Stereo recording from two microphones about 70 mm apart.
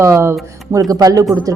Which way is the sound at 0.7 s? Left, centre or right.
Right.